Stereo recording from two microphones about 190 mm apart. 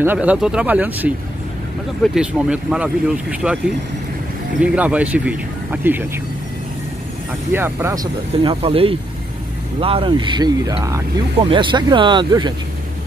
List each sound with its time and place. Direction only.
0.0 s speech: 10° right (ahead or behind)
2.1 s speech: 5° right (ahead or behind)
4.6 s speech: 5° right (ahead or behind)
7.5 s speech: 10° right (ahead or behind)